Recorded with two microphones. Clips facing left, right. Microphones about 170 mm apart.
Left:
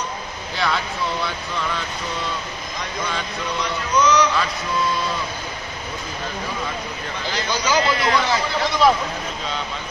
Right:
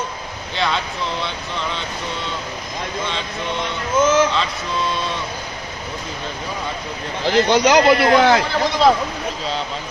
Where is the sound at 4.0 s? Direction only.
45° right (ahead or behind).